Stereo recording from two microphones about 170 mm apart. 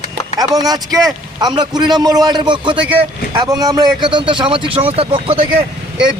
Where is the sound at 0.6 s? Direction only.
20° right (ahead or behind).